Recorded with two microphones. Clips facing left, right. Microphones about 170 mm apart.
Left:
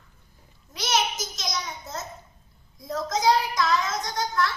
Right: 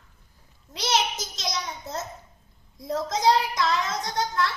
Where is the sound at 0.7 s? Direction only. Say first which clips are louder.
Right 1 dB; 30° right (ahead or behind).